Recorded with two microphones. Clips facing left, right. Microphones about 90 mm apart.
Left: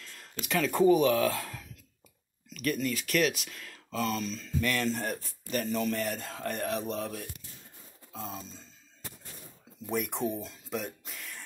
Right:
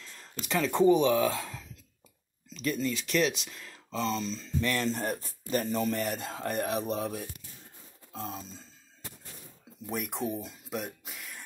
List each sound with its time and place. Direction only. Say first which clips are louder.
0.0 s a sound: even; 20° right (ahead or behind)
0.5 s speech: even; 20° right (ahead or behind)
1.3 s speech: even; centre (ahead or behind)
2.5 s speech: even; 20° right (ahead or behind)
3.5 s a sound: even; 15° right (ahead or behind)
3.9 s a sound: even; 5° left (ahead or behind)
4.2 s speech: even; 30° right (ahead or behind)
5.7 s speech: right 1 dB; 5° right (ahead or behind)
9.8 s speech: left 2 dB; centre (ahead or behind)